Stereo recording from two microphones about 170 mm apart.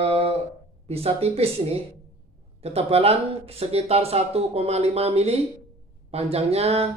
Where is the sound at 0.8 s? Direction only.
35° right (ahead or behind).